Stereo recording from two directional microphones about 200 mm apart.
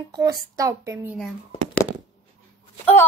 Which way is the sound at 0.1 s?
20° right (ahead or behind).